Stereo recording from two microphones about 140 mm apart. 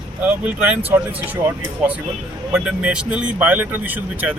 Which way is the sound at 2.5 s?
10° right (ahead or behind).